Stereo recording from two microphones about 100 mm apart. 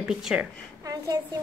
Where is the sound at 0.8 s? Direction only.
35° right (ahead or behind).